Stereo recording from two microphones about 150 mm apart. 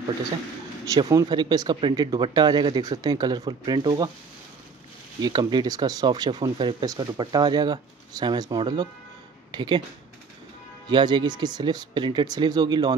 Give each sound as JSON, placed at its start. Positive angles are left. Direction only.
{"t": 0.8, "sound": "speech", "side_deg": -25}
{"t": 5.2, "sound": "speech", "side_deg": -30}
{"t": 10.9, "sound": "speech", "side_deg": -30}